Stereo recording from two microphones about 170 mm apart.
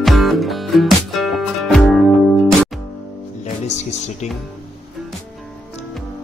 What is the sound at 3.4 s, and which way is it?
Music, 40° left (ahead or behind).